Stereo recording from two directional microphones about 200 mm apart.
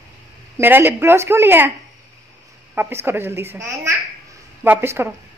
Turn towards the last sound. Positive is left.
turn(degrees=-10)  # may be behind; listen again after turning